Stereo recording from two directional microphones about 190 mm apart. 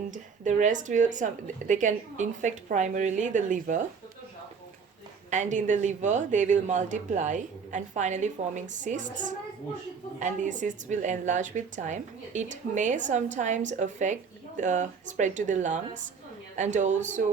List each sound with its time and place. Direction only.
0.1 s a woman's voice: 40° right (ahead or behind)
5.3 s a woman's voice: 40° right (ahead or behind)